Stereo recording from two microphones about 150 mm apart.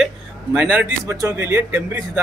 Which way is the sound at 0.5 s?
10° right (ahead or behind).